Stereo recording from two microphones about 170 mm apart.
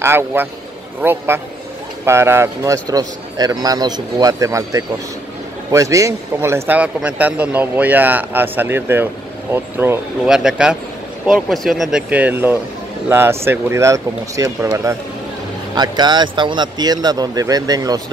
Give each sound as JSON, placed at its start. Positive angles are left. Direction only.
{"t": 0.0, "sound": "a man's voice", "side_deg": -15}